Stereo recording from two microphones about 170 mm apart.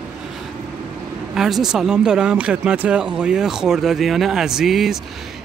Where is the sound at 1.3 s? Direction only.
Centre (ahead or behind).